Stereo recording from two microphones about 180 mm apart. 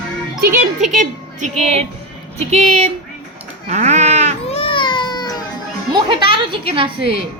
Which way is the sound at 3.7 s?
40° right (ahead or behind).